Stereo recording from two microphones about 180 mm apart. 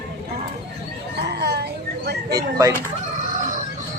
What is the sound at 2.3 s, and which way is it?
Speech, 15° right (ahead or behind).